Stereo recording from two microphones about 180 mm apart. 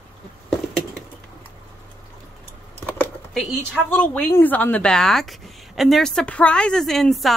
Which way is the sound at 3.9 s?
10° left (ahead or behind).